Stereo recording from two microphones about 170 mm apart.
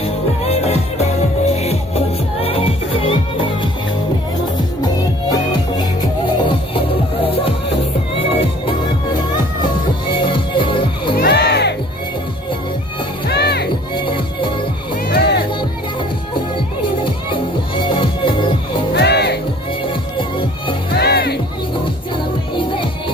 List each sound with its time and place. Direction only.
0.0 s music: 35° left (ahead or behind)
4.8 s music: 25° left (ahead or behind)
10.1 s music: 30° left (ahead or behind)
11.1 s music: 75° left (ahead or behind)
13.3 s music: 75° left (ahead or behind)
13.9 s music: 30° left (ahead or behind)
15.0 s music: 70° left (ahead or behind)
17.0 s music: 30° left (ahead or behind)
18.9 s music: 80° left
19.9 s music: 30° left (ahead or behind)
20.9 s music: 70° left (ahead or behind)
22.6 s music: 30° left (ahead or behind)